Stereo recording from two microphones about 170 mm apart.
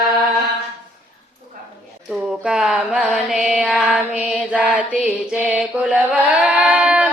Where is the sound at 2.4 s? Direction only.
5° right (ahead or behind).